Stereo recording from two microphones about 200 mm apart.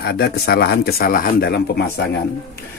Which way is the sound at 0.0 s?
50° left (ahead or behind).